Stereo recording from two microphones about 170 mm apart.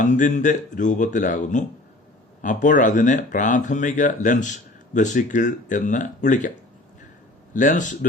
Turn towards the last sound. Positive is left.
turn(degrees=50)  # may be behind; listen again after turning